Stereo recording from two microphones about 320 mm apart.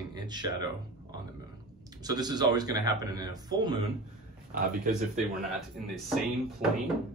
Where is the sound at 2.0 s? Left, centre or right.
Centre.